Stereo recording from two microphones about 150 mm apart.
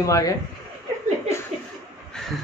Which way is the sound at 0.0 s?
20° left (ahead or behind).